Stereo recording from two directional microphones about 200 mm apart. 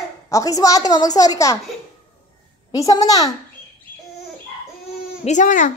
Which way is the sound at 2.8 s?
20° left (ahead or behind).